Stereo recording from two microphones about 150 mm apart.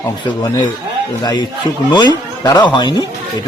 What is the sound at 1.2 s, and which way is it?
A man's voice, 30° left (ahead or behind).